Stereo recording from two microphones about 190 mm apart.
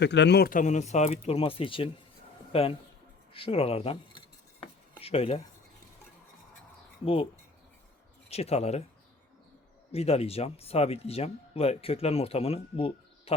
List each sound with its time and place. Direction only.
0.0 s speech: 65° left (ahead or behind); by 5.4 s 30° left (ahead or behind)
7.0 s speech: 30° left (ahead or behind)
8.3 s speech: 35° left (ahead or behind)
9.9 s speech: 30° left (ahead or behind)